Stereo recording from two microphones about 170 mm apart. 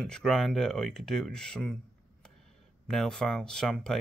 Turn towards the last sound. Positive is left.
turn(degrees=5)  # may be behind; listen again after turning